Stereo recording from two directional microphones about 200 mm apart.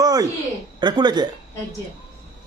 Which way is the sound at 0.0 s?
20° right (ahead or behind).